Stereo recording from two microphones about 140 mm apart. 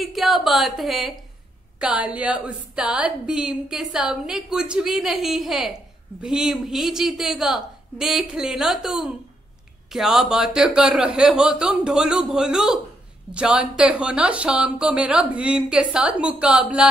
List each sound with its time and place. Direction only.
0.0 s a woman's voice: centre (ahead or behind)